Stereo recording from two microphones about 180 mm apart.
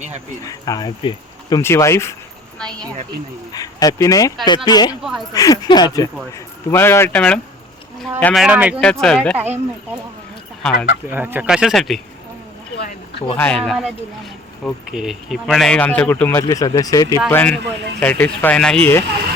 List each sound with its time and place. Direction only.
0.4 s speech: 20° left (ahead or behind)
2.6 s speech: 5° left (ahead or behind)
3.5 s speech: 20° left (ahead or behind); by 8.8 s 5° right (ahead or behind)
8.8 s speech: 5° left (ahead or behind)
10.6 s speech: 5° left (ahead or behind)
11.1 s speech: 10° right (ahead or behind)
13.3 s speech: 5° left (ahead or behind)
17.2 s speech: 5° left (ahead or behind)
17.6 s speech: 70° right (ahead or behind)
18.0 s speech: 10° left (ahead or behind)